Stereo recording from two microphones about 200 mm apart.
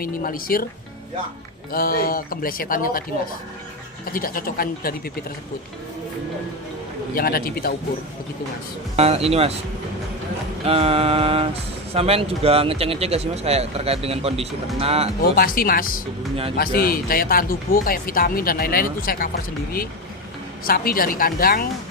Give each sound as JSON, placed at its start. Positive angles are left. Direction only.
{"t": 0.0, "sound": "speech", "side_deg": 45}
{"t": 1.7, "sound": "speech", "side_deg": 45}
{"t": 4.0, "sound": "speech", "side_deg": 45}
{"t": 7.2, "sound": "speech", "side_deg": 45}
{"t": 9.0, "sound": "speech", "side_deg": -30}
{"t": 10.6, "sound": "speech", "side_deg": -30}
{"t": 15.4, "sound": "speech", "side_deg": 45}
{"t": 20.7, "sound": "speech", "side_deg": 45}